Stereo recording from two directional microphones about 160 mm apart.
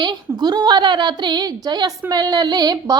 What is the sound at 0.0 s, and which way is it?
A woman's voice, 30° right (ahead or behind).